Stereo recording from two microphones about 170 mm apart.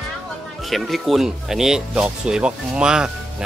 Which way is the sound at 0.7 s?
Centre (ahead or behind).